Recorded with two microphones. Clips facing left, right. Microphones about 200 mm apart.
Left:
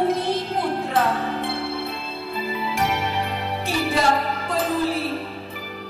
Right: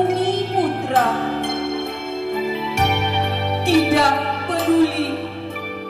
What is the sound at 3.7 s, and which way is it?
Music, 65° right (ahead or behind).